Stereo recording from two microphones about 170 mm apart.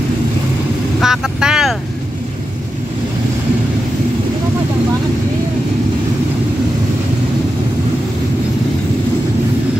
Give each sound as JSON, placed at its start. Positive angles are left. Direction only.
{"t": 1.0, "sound": "speech", "side_deg": -5}